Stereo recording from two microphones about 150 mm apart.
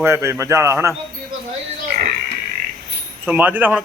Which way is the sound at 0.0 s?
20° right (ahead or behind).